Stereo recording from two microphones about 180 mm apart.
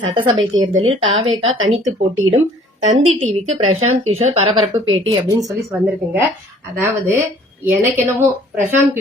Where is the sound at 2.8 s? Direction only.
35° right (ahead or behind).